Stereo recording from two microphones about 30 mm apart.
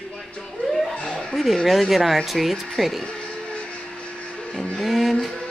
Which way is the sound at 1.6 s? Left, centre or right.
Centre.